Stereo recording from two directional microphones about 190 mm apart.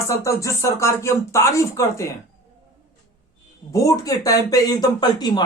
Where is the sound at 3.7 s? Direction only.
15° left (ahead or behind).